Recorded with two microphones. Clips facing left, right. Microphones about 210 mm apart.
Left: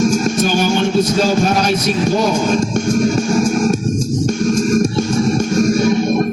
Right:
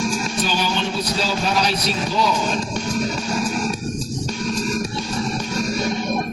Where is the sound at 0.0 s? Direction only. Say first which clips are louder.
Left 9 dB; 45° left (ahead or behind).